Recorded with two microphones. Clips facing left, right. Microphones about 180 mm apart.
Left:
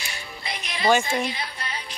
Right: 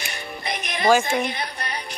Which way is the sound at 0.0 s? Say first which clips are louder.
Right 5 dB; 55° right (ahead or behind).